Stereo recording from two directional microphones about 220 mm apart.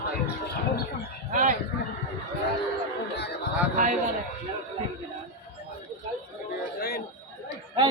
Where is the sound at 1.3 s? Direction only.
35° right (ahead or behind).